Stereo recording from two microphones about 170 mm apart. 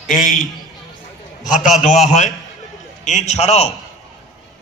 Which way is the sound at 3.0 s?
45° left (ahead or behind).